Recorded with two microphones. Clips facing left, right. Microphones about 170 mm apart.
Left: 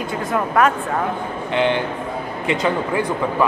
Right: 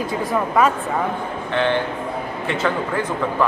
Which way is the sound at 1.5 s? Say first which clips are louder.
Left 1 dB; 15° left (ahead or behind).